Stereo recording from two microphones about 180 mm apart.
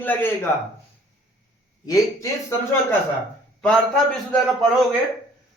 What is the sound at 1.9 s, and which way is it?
Speech, 20° left (ahead or behind).